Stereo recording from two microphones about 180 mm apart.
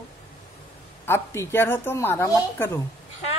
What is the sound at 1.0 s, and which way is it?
A woman's voice, 15° left (ahead or behind).